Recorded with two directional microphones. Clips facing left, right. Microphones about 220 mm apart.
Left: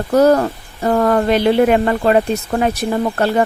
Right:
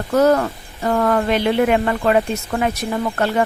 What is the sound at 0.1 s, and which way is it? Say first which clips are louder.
Speech: left 3 dB; 35° left (ahead or behind).